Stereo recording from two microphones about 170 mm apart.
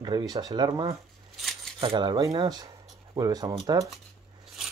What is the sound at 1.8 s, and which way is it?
Speech, 30° right (ahead or behind).